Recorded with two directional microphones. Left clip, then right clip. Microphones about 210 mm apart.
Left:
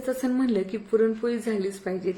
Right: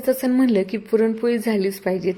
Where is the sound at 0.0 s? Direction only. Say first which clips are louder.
Right 7 dB; 25° right (ahead or behind).